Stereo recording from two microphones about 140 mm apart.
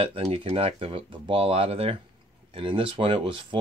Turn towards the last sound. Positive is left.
turn(degrees=-35)  # may be behind; listen again after turning